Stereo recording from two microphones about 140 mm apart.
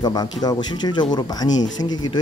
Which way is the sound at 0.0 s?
30° left (ahead or behind).